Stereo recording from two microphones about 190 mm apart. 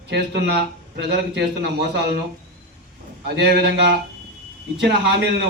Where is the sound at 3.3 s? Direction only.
55° right (ahead or behind).